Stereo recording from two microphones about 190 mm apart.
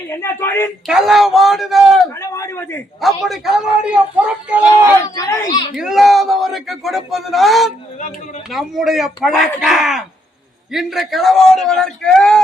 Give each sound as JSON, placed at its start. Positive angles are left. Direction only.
{"t": 0.2, "sound": "a man's voice", "side_deg": 10}
{"t": 0.9, "sound": "a man's voice", "side_deg": 0}
{"t": 2.1, "sound": "a man's voice", "side_deg": 15}
{"t": 3.0, "sound": "a man's voice", "side_deg": 0}
{"t": 5.1, "sound": "speech", "side_deg": 25}
{"t": 5.7, "sound": "a man's voice", "side_deg": 0}